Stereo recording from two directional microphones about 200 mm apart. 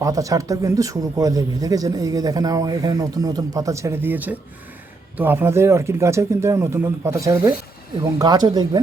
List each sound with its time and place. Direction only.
0.0 s speech: 15° right (ahead or behind)